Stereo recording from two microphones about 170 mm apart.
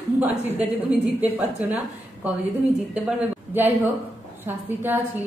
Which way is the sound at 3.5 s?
10° right (ahead or behind).